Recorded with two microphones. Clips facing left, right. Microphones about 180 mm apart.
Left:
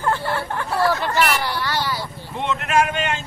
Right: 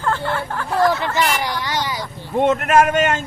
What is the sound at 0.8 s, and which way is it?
Speech, 15° right (ahead or behind).